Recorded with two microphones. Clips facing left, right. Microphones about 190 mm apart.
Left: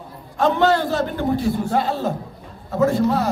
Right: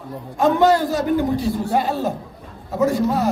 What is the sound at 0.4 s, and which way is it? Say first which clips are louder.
A man's voice: right 2 dB; 15° right (ahead or behind).